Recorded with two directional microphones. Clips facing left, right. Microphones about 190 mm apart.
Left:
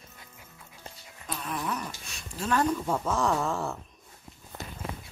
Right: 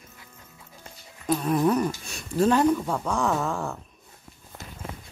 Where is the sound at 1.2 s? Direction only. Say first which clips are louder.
Right 12 dB; 40° right (ahead or behind).